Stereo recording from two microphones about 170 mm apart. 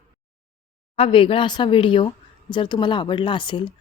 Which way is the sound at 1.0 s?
30° left (ahead or behind).